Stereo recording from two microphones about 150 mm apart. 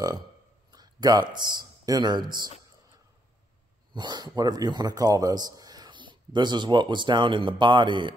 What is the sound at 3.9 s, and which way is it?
A man's voice, 30° right (ahead or behind).